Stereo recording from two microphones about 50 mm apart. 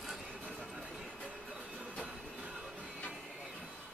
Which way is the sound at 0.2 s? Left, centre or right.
Right.